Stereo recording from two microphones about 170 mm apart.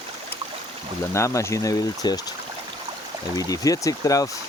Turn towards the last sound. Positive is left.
turn(degrees=20)  # may be behind; listen again after turning